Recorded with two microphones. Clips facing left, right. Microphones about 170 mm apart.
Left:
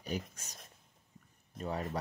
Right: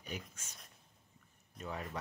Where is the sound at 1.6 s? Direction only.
35° left (ahead or behind).